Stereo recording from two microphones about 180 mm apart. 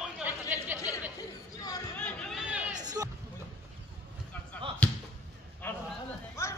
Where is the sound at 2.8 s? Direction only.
20° right (ahead or behind).